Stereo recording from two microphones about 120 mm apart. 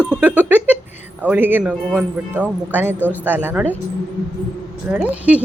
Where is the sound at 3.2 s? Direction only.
15° right (ahead or behind).